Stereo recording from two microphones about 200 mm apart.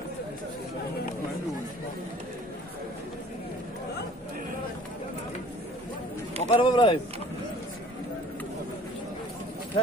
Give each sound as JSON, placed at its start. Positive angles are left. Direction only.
{"t": 6.4, "sound": "speech", "side_deg": 30}